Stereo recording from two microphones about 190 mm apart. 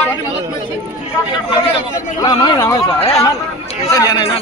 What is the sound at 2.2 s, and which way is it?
Speech, 20° left (ahead or behind).